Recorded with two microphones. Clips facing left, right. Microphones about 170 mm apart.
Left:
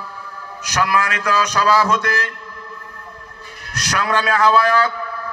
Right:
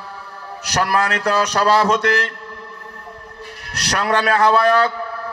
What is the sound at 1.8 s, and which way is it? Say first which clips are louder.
Speech: right 3 dB; 70° right (ahead or behind).